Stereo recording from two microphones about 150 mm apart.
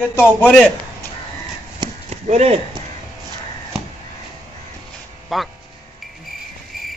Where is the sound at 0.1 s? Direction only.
10° left (ahead or behind).